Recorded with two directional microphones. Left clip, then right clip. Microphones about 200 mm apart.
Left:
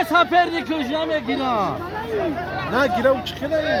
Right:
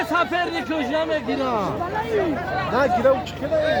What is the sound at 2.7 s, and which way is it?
Speech, 55° left (ahead or behind).